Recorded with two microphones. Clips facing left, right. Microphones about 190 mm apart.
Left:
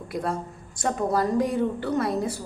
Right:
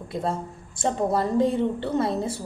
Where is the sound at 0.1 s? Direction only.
25° right (ahead or behind).